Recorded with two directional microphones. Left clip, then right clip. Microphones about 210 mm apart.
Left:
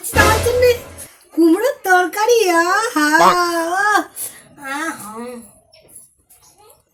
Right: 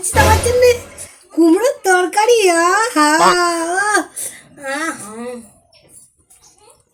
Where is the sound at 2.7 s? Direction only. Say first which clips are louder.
Right 2 dB; 15° left (ahead or behind).